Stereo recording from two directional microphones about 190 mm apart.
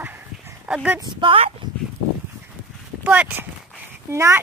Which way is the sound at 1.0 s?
25° right (ahead or behind).